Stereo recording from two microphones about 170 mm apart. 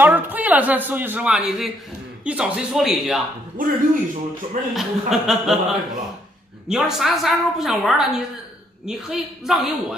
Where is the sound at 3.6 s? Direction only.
55° right (ahead or behind).